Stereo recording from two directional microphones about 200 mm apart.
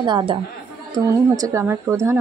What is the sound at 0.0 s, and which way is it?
Speech, 25° right (ahead or behind).